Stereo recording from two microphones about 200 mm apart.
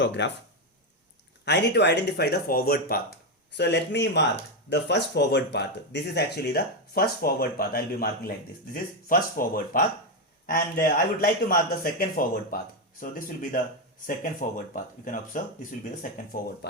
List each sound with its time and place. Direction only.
0.2 s speech: 60° left (ahead or behind)
1.5 s a man's voice: 60° left (ahead or behind)